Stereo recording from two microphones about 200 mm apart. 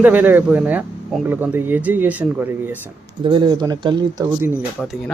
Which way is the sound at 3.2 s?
25° right (ahead or behind).